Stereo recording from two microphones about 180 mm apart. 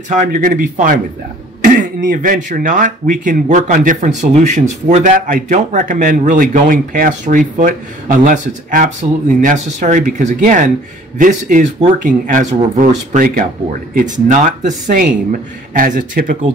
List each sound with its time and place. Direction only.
0.1 s speech: 50° right (ahead or behind)